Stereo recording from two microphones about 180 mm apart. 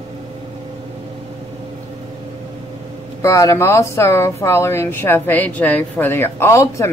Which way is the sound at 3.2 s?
20° left (ahead or behind).